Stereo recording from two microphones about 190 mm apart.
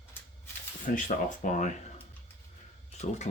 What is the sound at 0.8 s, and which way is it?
Speech, 40° left (ahead or behind).